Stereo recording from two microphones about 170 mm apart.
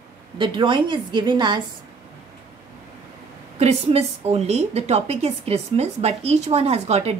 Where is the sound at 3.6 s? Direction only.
40° right (ahead or behind).